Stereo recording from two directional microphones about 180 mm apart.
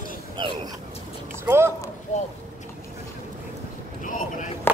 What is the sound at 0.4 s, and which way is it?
Speech, 25° right (ahead or behind).